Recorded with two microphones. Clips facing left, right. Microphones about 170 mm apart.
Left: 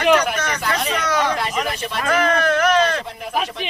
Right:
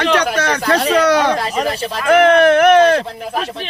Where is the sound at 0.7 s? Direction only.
35° right (ahead or behind).